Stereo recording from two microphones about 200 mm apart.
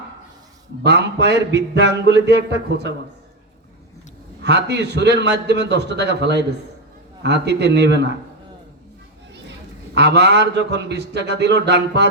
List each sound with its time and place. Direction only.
0.8 s a man's voice: 60° right (ahead or behind)
4.4 s a man's voice: 55° right (ahead or behind)
9.5 s a man's voice: 60° right (ahead or behind)